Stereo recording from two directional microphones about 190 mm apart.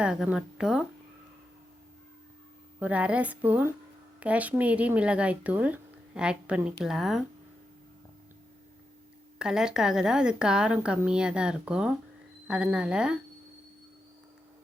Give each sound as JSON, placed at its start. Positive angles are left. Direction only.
{"t": 0.0, "sound": "speech", "side_deg": -5}
{"t": 2.8, "sound": "speech", "side_deg": -5}
{"t": 9.4, "sound": "speech", "side_deg": -5}